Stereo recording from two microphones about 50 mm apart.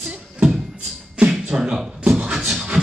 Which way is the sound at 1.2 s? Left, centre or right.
Centre.